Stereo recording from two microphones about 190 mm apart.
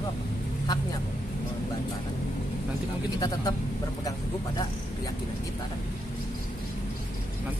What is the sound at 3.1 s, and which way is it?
Speech, 20° left (ahead or behind).